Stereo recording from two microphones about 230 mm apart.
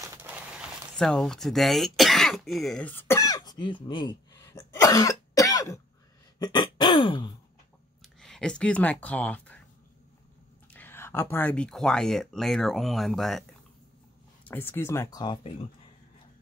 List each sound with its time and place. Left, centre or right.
0.0 s a sound: centre
6.4 s throat clearing: centre
8.0 s speech: centre
10.7 s speech: centre
14.4 s speech: centre